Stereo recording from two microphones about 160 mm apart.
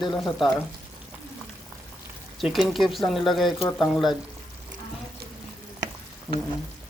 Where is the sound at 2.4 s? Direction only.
Centre (ahead or behind).